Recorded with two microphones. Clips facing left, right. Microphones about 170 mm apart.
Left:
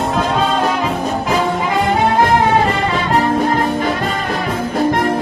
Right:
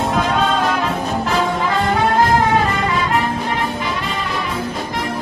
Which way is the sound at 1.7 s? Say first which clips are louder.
Left 3 dB; 20° left (ahead or behind).